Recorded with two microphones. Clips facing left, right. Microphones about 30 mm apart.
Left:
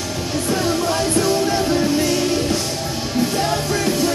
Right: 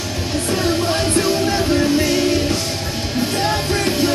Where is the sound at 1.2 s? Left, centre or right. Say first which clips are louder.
Even; centre.